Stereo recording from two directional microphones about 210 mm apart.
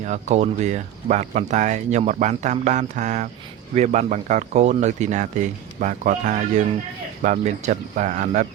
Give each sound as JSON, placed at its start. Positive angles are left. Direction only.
{"t": 0.0, "sound": "speech", "side_deg": -35}